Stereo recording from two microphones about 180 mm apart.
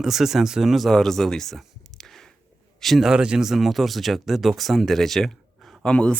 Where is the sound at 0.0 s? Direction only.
Centre (ahead or behind).